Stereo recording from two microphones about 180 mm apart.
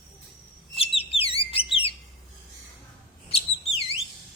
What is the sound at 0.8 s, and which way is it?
Bird, 30° left (ahead or behind).